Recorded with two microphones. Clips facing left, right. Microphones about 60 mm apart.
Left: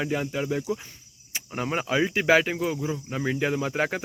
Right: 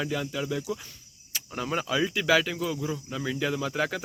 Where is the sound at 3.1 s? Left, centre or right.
Left.